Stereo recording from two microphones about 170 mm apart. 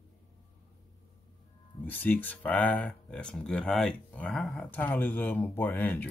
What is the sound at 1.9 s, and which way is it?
Speech, 10° left (ahead or behind).